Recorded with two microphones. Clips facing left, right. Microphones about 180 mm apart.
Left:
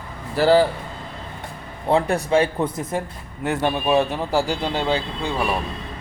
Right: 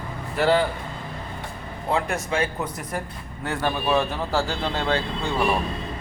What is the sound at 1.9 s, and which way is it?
A man's voice, 35° left (ahead or behind).